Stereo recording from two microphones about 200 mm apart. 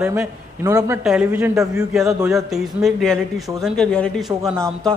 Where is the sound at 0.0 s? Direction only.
10° right (ahead or behind); by 4.1 s 5° left (ahead or behind).